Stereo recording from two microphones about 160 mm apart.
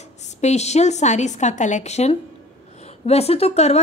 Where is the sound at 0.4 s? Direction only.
45° left (ahead or behind).